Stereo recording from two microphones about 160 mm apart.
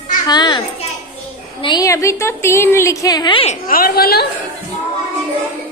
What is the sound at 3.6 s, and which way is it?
Speech, 65° left (ahead or behind).